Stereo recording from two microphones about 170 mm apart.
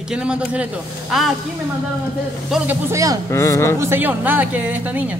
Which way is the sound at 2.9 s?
20° right (ahead or behind).